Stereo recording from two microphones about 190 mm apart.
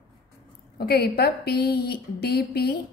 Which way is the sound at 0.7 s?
55° left (ahead or behind).